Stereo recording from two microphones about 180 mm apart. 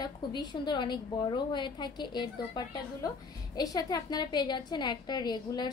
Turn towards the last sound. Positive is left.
turn(degrees=25)  # may be behind; listen again after turning